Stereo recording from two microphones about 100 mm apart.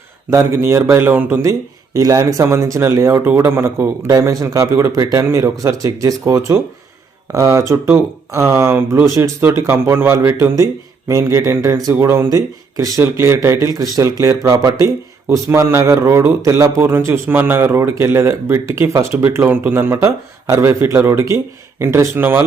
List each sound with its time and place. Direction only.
0.3 s speech: 25° right (ahead or behind)
1.4 s a man's voice: 35° right (ahead or behind)
13.7 s a man's voice: 35° right (ahead or behind)